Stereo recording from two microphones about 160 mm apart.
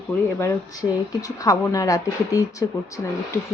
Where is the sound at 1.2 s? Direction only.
20° left (ahead or behind).